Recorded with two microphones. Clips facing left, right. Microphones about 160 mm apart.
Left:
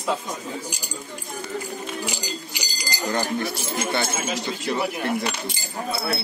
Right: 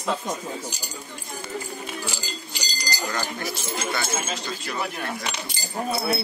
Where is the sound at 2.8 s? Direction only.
20° left (ahead or behind).